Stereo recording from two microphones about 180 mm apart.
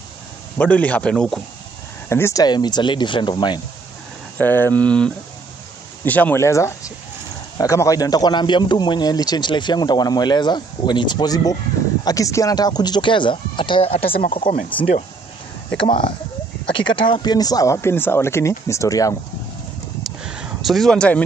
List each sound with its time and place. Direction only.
0.6 s speech: 10° left (ahead or behind)
2.0 s a man's voice: 15° left (ahead or behind)
4.4 s a man's voice: 10° left (ahead or behind); by 14.4 s 30° left (ahead or behind)
14.4 s speech: 45° left (ahead or behind)
14.8 s a man's voice: 35° left (ahead or behind); by 19.1 s 20° left (ahead or behind)
20.0 s a sound: 5° right (ahead or behind)